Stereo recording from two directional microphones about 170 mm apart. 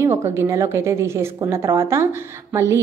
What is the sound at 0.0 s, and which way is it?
A woman's voice, 15° right (ahead or behind).